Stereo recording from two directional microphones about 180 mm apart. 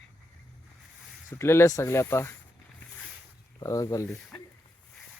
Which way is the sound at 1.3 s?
15° left (ahead or behind).